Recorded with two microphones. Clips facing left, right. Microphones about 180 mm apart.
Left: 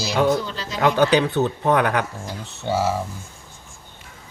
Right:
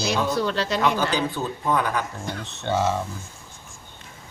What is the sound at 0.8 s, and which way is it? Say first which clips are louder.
Speech: left 9 dB; 70° left (ahead or behind).